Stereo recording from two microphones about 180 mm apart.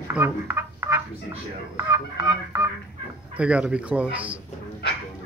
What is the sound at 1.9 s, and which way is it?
Speech, 15° right (ahead or behind).